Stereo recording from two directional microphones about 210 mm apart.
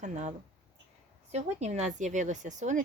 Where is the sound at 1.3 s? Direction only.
30° right (ahead or behind).